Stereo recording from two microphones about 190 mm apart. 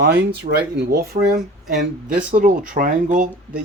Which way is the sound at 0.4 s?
55° right (ahead or behind).